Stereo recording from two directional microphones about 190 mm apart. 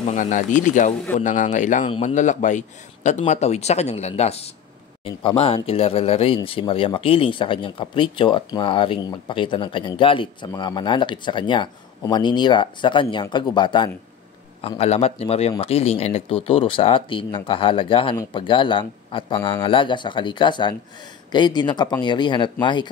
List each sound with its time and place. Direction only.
0.0 s speech: 40° left (ahead or behind); by 22.8 s 25° left (ahead or behind)